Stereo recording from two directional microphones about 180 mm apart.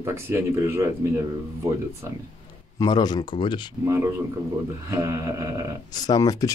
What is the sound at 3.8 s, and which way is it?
Speech, 15° right (ahead or behind).